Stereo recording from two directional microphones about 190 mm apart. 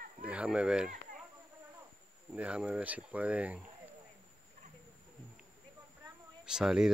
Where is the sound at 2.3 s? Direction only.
5° right (ahead or behind).